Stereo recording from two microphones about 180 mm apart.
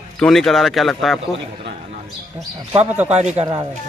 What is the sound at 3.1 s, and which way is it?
Speech, 35° right (ahead or behind).